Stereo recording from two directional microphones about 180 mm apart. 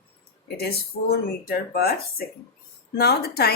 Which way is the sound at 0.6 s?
60° left (ahead or behind).